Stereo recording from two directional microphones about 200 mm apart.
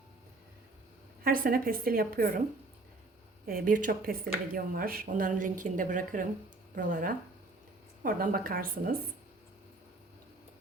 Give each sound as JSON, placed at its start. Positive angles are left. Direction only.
{"t": 1.2, "sound": "a woman's voice", "side_deg": -45}
{"t": 3.4, "sound": "a woman's voice", "side_deg": -45}